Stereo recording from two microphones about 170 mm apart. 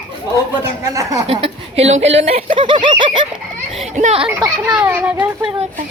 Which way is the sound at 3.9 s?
40° right (ahead or behind).